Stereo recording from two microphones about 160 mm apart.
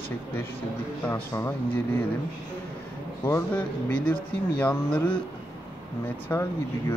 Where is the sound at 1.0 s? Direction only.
15° left (ahead or behind).